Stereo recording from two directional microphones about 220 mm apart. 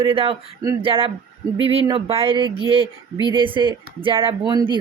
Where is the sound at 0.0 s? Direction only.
25° right (ahead or behind).